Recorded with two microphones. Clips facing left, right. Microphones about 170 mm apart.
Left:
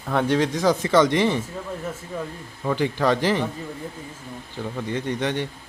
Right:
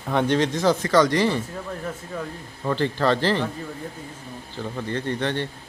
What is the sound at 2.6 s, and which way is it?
Speech, 10° left (ahead or behind).